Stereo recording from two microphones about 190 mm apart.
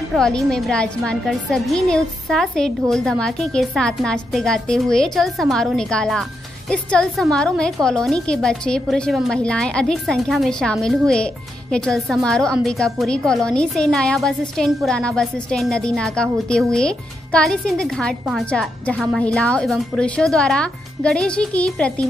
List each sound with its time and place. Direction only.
0.1 s a woman's voice: 5° left (ahead or behind)